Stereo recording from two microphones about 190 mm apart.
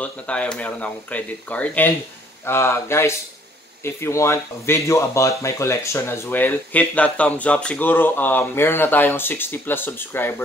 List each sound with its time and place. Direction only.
0.0 s speech: 5° left (ahead or behind)